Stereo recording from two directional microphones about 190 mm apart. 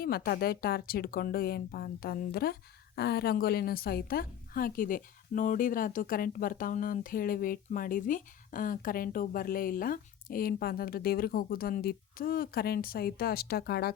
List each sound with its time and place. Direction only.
0.0 s speech: 55° left (ahead or behind)